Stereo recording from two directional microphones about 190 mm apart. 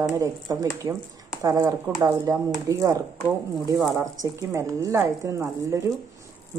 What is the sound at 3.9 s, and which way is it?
A woman's voice, 15° right (ahead or behind).